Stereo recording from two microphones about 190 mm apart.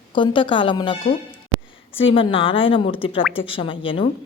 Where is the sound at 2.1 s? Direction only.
30° left (ahead or behind).